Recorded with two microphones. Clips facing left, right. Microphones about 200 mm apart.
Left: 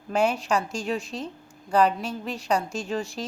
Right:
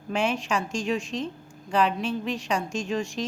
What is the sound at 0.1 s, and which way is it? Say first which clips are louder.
A woman's voice: left 3 dB; 35° left (ahead or behind).